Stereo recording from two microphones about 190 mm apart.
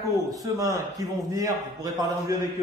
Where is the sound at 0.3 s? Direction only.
20° right (ahead or behind).